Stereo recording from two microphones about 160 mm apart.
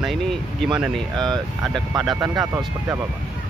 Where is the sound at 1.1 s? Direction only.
25° right (ahead or behind).